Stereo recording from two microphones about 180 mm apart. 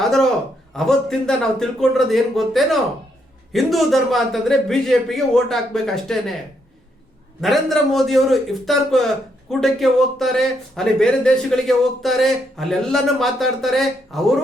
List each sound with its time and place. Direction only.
0.0 s a sound: centre (ahead or behind)
0.8 s a man's voice: 5° left (ahead or behind)
7.4 s a man's voice: centre (ahead or behind)